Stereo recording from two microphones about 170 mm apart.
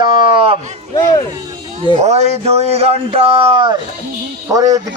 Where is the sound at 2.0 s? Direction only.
40° right (ahead or behind).